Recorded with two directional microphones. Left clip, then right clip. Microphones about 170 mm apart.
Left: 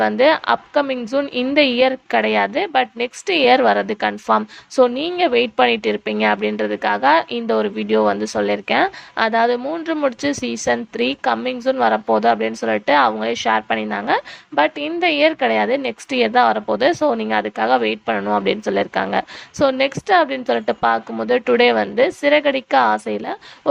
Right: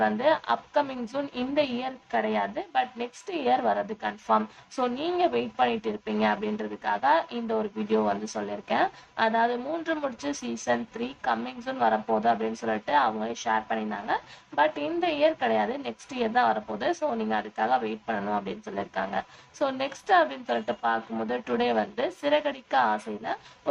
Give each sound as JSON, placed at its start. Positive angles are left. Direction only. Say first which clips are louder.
{"t": 0.0, "sound": "a woman's voice", "louder": "left 9 dB", "side_deg": 45}